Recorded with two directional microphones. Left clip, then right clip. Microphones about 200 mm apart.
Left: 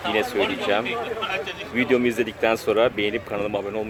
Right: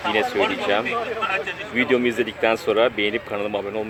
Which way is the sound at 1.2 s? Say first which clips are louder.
Right 3 dB; 40° left (ahead or behind).